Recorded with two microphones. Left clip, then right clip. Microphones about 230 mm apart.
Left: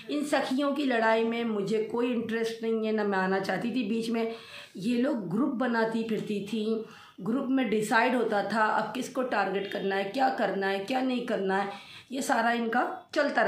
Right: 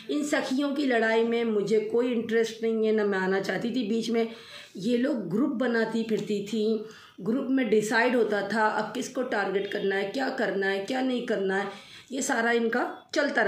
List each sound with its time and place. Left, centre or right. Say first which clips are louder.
0.1 s a woman's voice: right 1 dB; centre